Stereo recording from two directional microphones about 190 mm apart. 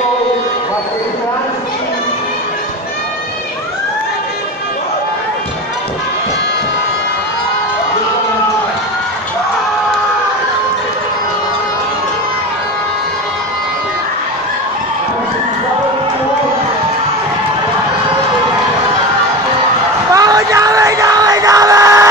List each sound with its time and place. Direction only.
20.1 s crowd: 20° right (ahead or behind)